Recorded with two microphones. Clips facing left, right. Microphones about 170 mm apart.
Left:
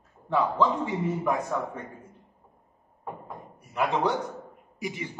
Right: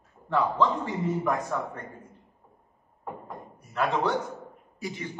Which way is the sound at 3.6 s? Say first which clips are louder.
Left 1 dB; 15° left (ahead or behind).